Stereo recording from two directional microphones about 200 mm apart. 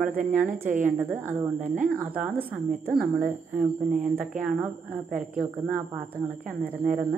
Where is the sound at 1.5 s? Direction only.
40° right (ahead or behind).